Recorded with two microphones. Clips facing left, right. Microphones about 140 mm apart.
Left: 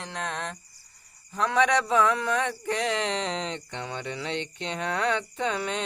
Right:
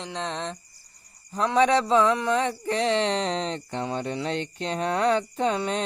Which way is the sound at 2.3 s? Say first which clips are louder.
Right 3 dB; 30° right (ahead or behind).